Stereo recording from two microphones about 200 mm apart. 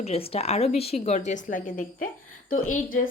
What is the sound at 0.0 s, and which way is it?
Speech, 30° left (ahead or behind).